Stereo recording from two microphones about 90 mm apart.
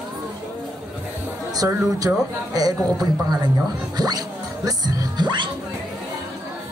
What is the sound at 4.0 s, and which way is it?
Music, 45° right (ahead or behind).